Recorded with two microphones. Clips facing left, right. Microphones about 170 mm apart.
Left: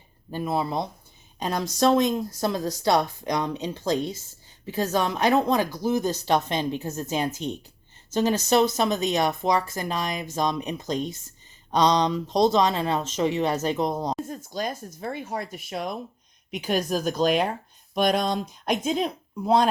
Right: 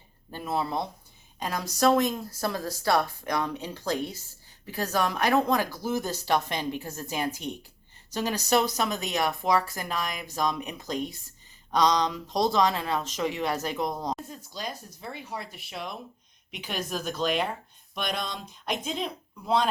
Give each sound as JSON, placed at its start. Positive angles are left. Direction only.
{"t": 0.3, "sound": "speech", "side_deg": 15}
{"t": 14.3, "sound": "speech", "side_deg": 50}